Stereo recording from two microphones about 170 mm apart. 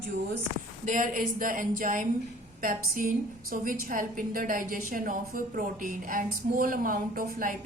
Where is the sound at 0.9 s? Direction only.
50° right (ahead or behind).